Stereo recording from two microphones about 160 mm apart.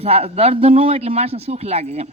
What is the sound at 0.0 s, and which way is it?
Speech, 40° right (ahead or behind).